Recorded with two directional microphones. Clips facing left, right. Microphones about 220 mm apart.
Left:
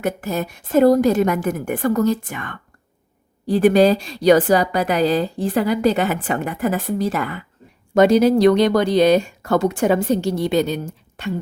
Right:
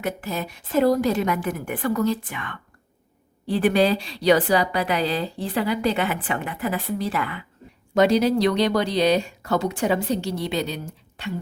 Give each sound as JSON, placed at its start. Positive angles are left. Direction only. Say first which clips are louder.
{"t": 0.0, "sound": "a woman's voice", "louder": "left 5 dB", "side_deg": 45}